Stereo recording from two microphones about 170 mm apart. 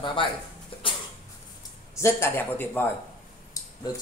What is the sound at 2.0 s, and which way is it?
Speech, 15° left (ahead or behind).